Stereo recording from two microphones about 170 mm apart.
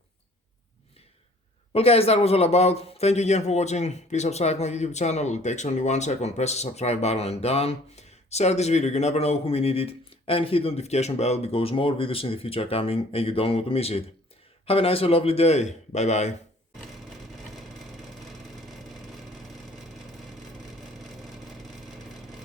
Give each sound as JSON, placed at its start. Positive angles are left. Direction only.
{"t": 1.7, "sound": "a man's voice", "side_deg": 35}